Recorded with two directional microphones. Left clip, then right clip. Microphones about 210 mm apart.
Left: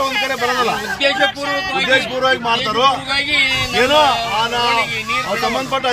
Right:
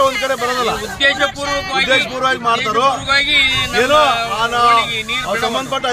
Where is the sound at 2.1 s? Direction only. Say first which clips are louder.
Even; 15° right (ahead or behind).